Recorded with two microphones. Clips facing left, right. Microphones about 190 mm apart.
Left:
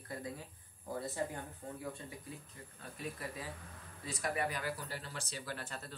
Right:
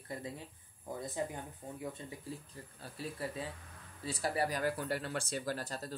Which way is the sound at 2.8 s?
30° right (ahead or behind).